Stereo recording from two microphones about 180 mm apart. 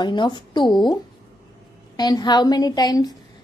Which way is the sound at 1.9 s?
20° left (ahead or behind).